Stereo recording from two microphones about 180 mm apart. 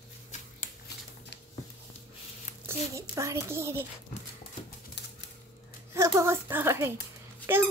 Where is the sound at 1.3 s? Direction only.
70° left (ahead or behind).